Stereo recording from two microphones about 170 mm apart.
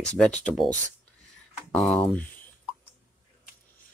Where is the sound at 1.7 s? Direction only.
5° left (ahead or behind).